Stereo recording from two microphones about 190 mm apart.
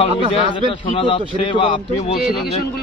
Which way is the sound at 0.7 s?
25° left (ahead or behind).